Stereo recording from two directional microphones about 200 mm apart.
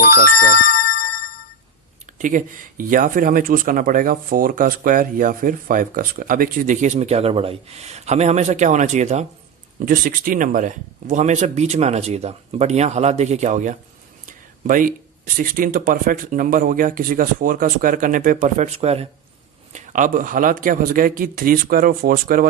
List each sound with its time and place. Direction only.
2.1 s speech: 40° right (ahead or behind)
9.8 s speech: 45° right (ahead or behind)
14.3 s a sound: 40° right (ahead or behind)
15.4 s speech: 45° right (ahead or behind)